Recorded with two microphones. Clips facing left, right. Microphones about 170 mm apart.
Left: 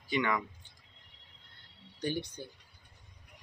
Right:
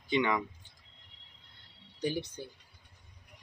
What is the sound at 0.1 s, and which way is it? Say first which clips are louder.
Speech: right 2 dB; 20° right (ahead or behind).